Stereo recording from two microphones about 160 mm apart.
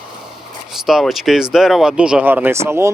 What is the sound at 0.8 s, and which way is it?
Speech, centre (ahead or behind).